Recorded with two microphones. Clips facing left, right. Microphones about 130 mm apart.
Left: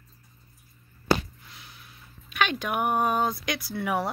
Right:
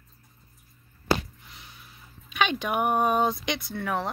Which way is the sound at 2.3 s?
Centre (ahead or behind).